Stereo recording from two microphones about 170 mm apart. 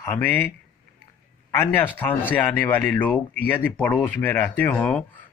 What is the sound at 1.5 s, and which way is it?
Speech, 15° left (ahead or behind).